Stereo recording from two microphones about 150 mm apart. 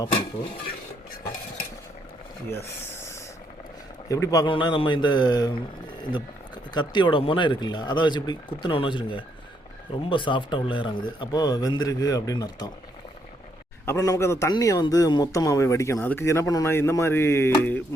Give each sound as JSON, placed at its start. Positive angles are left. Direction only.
{"t": 2.5, "sound": "speech", "side_deg": 15}
{"t": 4.1, "sound": "speech", "side_deg": 25}
{"t": 6.7, "sound": "speech", "side_deg": 30}
{"t": 13.8, "sound": "speech", "side_deg": 20}
{"t": 17.6, "sound": "music", "side_deg": 10}